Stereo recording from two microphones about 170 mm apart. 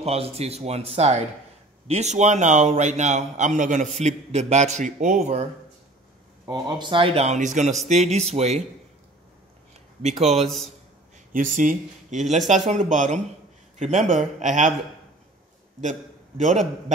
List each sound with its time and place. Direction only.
0.0 s a man's voice: 35° right (ahead or behind)
6.4 s speech: 25° right (ahead or behind)
10.0 s speech: 40° right (ahead or behind)
11.3 s a man's voice: 50° right (ahead or behind)
15.8 s a man's voice: 45° right (ahead or behind)